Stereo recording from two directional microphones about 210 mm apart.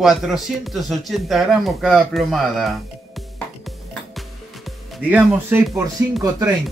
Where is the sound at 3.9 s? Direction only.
Centre (ahead or behind).